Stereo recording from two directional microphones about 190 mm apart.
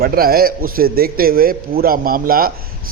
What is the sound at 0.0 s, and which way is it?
A man's voice, 50° right (ahead or behind).